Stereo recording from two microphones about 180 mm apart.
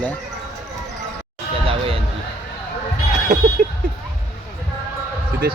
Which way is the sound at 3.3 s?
40° right (ahead or behind).